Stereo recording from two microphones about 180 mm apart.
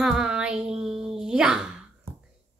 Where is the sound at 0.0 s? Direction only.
5° right (ahead or behind).